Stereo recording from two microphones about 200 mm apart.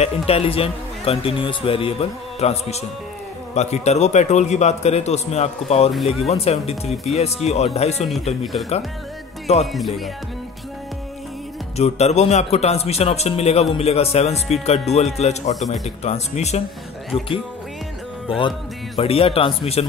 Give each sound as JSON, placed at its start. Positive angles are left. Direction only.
{"t": 0.0, "sound": "a man's voice", "side_deg": 30}
{"t": 9.7, "sound": "music", "side_deg": 0}
{"t": 11.7, "sound": "a man's voice", "side_deg": 35}
{"t": 18.9, "sound": "a man's voice", "side_deg": 30}